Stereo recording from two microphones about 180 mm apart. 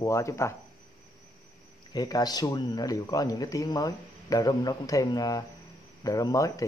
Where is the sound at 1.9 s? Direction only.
20° left (ahead or behind).